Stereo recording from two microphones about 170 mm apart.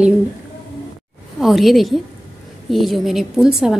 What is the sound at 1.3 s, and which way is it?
A woman's voice, centre (ahead or behind).